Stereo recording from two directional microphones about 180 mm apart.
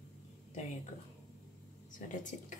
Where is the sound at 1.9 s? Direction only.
45° left (ahead or behind).